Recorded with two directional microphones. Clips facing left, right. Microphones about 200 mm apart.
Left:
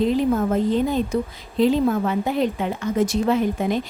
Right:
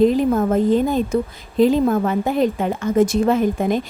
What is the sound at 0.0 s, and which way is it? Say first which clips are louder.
A woman's voice: right 4 dB; 45° right (ahead or behind).